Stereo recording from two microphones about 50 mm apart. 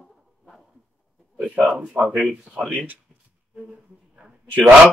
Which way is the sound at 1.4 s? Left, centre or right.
Right.